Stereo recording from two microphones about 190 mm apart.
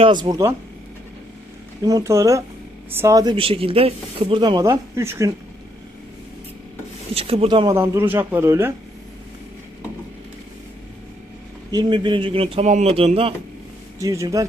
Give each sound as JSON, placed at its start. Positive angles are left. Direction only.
{"t": 0.0, "sound": "speech", "side_deg": -25}
{"t": 1.8, "sound": "speech", "side_deg": -20}
{"t": 7.1, "sound": "speech", "side_deg": -30}
{"t": 7.8, "sound": "speech", "side_deg": -10}
{"t": 11.7, "sound": "speech", "side_deg": -25}
{"t": 14.0, "sound": "speech", "side_deg": -15}